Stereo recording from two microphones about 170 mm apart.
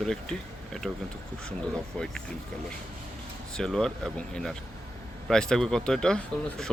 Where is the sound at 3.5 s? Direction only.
5° left (ahead or behind).